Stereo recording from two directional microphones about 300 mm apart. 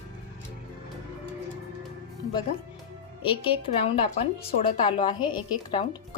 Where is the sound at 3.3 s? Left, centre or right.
Centre.